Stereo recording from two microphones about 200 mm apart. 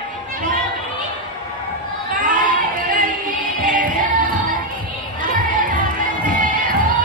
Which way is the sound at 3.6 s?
40° right (ahead or behind).